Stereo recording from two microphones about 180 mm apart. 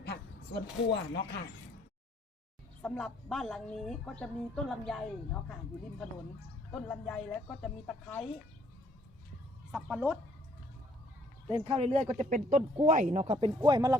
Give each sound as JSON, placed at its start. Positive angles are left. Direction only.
{"t": 0.9, "sound": "speech", "side_deg": 70}
{"t": 2.8, "sound": "a woman's voice", "side_deg": 5}
{"t": 6.7, "sound": "a woman's voice", "side_deg": 10}
{"t": 9.7, "sound": "speech", "side_deg": -10}
{"t": 11.5, "sound": "speech", "side_deg": -30}
{"t": 13.5, "sound": "speech", "side_deg": -25}